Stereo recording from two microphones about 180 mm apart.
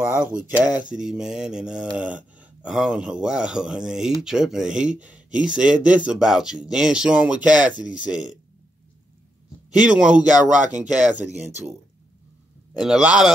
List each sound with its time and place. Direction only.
0.1 s speech: 5° right (ahead or behind)
9.8 s speech: 5° right (ahead or behind)
10.5 s speech: 45° right (ahead or behind)
10.8 s speech: 5° right (ahead or behind)
11.2 s speech: 40° right (ahead or behind)
12.7 s speech: centre (ahead or behind)